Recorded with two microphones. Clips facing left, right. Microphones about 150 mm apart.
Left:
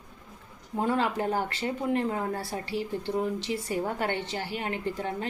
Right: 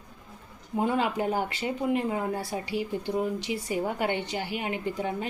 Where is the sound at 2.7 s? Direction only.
30° left (ahead or behind).